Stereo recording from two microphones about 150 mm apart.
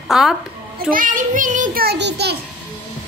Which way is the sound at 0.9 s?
60° right (ahead or behind).